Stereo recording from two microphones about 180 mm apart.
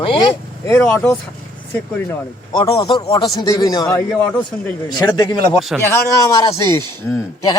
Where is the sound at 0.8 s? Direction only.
10° left (ahead or behind).